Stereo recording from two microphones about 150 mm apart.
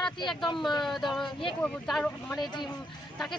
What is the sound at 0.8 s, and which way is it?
Speech, centre (ahead or behind).